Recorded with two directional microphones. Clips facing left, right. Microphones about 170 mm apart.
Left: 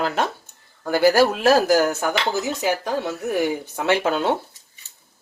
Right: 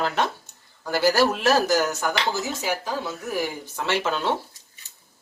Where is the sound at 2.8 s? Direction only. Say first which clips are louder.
Left 5 dB; 70° left (ahead or behind).